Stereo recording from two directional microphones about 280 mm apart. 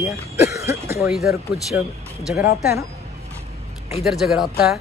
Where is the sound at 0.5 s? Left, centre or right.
Centre.